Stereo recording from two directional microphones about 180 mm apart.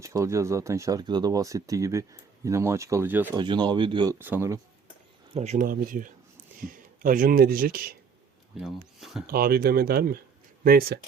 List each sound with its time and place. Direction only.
0.0 s speech: 15° right (ahead or behind)
3.3 s speech: 25° right (ahead or behind)
4.2 s speech: 10° right (ahead or behind)
5.3 s speech: 35° right (ahead or behind); by 7.9 s 55° right (ahead or behind)
8.5 s speech: centre (ahead or behind)
9.2 s speech: 55° right (ahead or behind)